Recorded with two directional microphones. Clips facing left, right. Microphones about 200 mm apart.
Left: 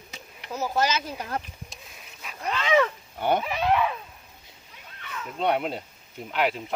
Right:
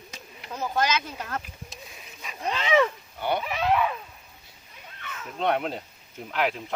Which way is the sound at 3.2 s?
45° left (ahead or behind).